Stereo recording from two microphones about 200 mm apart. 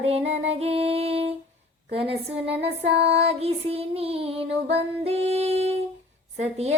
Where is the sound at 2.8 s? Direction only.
30° right (ahead or behind).